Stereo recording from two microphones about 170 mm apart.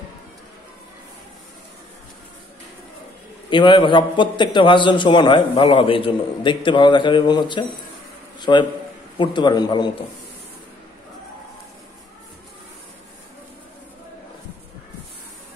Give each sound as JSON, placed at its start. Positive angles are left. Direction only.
{"t": 3.4, "sound": "a man's voice", "side_deg": 30}